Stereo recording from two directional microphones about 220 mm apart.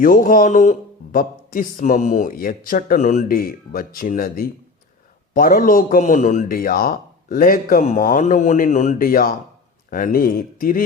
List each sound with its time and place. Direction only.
0.0 s a man's voice: 40° left (ahead or behind)